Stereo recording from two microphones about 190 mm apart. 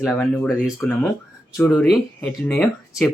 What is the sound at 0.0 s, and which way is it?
Speech, 5° left (ahead or behind).